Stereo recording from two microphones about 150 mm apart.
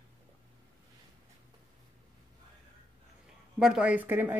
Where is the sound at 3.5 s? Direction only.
5° right (ahead or behind).